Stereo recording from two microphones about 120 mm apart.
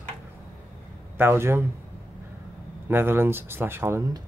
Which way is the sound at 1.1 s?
20° right (ahead or behind).